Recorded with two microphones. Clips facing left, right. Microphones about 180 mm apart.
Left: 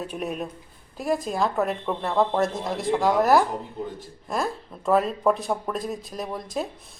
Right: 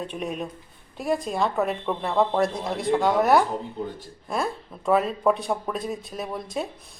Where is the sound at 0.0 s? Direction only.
5° left (ahead or behind).